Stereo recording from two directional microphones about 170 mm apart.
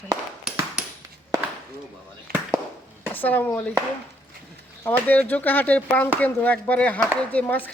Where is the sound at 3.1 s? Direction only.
10° left (ahead or behind).